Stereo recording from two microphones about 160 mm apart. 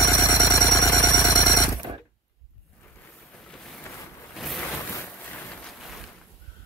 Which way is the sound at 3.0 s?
5° left (ahead or behind).